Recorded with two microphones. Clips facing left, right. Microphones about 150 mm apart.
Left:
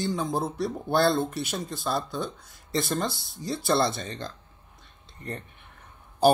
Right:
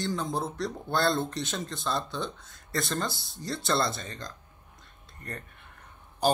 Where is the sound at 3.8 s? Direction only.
25° left (ahead or behind).